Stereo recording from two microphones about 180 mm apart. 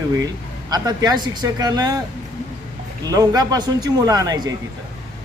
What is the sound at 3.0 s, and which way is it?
Speech, 20° right (ahead or behind).